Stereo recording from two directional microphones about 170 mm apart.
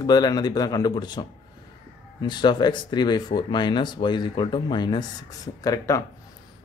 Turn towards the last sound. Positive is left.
turn(degrees=20)  # may be behind; listen again after turning